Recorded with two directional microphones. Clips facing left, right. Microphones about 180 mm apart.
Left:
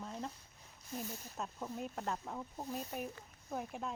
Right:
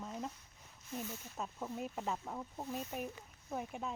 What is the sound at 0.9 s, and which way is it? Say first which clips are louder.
Speech: even; 35° left (ahead or behind).